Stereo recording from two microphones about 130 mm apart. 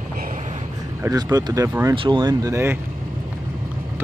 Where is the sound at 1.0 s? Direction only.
25° right (ahead or behind).